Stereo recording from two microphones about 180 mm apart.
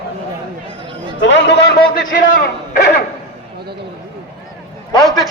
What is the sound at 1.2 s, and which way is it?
Speech, 75° left (ahead or behind).